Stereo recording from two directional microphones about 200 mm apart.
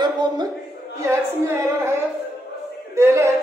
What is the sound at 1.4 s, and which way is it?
Speech, 10° right (ahead or behind).